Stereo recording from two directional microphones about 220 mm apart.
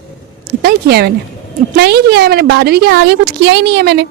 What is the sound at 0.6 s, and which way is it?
Speech, 45° right (ahead or behind).